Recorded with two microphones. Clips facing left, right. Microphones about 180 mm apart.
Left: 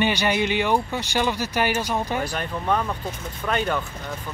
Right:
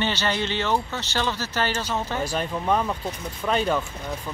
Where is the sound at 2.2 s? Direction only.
5° right (ahead or behind).